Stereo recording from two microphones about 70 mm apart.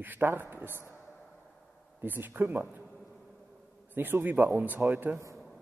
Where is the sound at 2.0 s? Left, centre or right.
Right.